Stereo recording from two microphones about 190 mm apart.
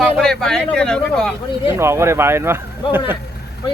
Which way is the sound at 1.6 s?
15° right (ahead or behind).